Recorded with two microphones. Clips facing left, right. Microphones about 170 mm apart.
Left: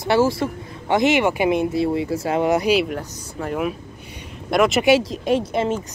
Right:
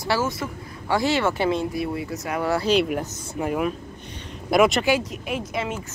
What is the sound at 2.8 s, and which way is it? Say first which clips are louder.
Speech: right 1 dB; 10° right (ahead or behind).